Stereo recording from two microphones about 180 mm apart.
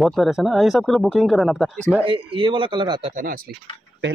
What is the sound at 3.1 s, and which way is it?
Speech, 55° right (ahead or behind).